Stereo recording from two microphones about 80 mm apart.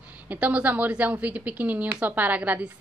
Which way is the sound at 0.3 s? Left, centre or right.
Centre.